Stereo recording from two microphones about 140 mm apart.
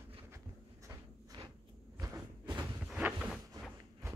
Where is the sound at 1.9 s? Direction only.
30° right (ahead or behind).